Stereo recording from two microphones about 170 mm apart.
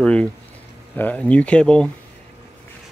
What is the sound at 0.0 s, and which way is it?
Speech, 5° left (ahead or behind).